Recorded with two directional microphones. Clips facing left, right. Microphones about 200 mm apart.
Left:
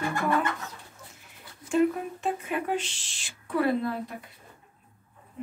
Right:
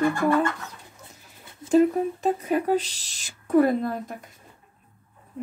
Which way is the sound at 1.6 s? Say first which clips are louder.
Right 9 dB; 25° right (ahead or behind).